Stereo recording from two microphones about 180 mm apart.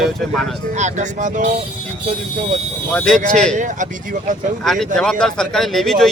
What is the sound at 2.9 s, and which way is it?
Speech, 5° left (ahead or behind).